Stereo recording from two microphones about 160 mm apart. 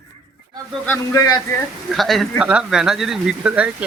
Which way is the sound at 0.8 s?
15° left (ahead or behind).